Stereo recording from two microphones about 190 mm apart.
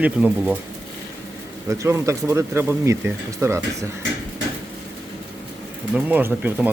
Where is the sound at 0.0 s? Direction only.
10° right (ahead or behind).